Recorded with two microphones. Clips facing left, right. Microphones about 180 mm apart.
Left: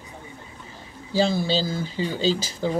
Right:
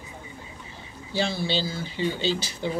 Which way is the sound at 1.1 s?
40° left (ahead or behind).